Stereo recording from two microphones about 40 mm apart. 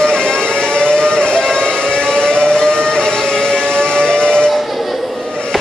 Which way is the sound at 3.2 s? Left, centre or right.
Centre.